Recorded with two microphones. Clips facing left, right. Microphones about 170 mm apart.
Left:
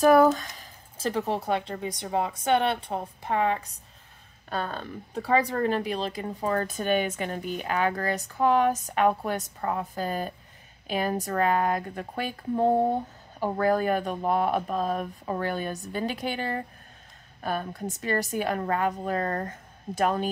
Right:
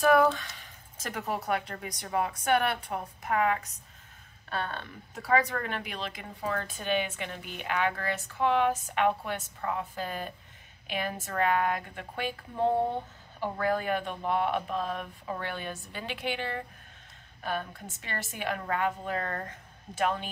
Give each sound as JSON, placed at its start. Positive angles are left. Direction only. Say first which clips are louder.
{"t": 0.0, "sound": "a woman's voice", "louder": "left 5 dB", "side_deg": 40}